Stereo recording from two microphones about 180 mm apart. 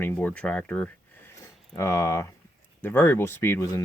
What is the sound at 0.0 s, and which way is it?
Speech, 10° left (ahead or behind).